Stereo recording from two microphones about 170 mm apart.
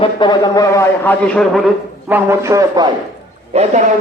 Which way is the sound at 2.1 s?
15° right (ahead or behind).